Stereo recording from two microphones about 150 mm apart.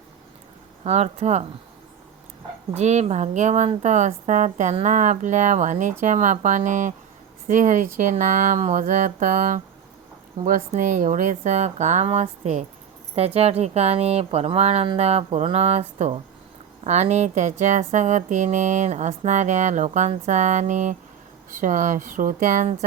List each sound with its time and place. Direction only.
0.9 s speech: 45° right (ahead or behind)
2.7 s a woman's voice: 50° right (ahead or behind)